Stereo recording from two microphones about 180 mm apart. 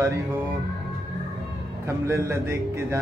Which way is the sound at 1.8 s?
15° right (ahead or behind).